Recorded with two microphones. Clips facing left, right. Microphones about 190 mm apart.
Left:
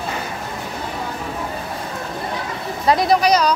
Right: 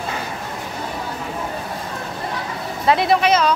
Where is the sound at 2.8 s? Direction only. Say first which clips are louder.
Even; 40° left (ahead or behind).